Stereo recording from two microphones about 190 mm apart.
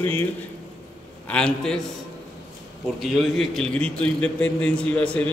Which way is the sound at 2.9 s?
Centre (ahead or behind).